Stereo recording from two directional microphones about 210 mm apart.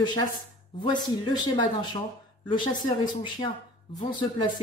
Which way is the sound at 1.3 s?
20° left (ahead or behind).